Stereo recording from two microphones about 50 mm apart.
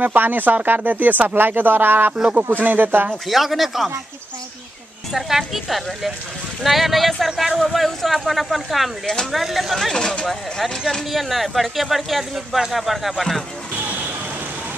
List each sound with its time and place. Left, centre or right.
0.0 s speech: right
3.1 s speech: centre
5.1 s speech: centre
9.0 s speech: centre
9.3 s speech: centre
9.9 s speech: centre
10.9 s speech: centre